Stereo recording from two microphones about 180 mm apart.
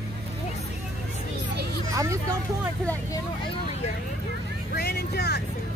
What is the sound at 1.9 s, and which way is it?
Speech, 20° right (ahead or behind).